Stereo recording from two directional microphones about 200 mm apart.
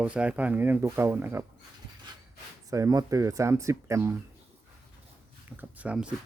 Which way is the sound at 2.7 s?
15° right (ahead or behind).